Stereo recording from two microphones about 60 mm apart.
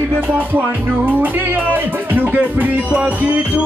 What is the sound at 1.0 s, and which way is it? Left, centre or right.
Music, right.